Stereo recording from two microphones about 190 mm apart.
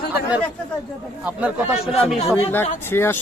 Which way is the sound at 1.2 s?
5° right (ahead or behind).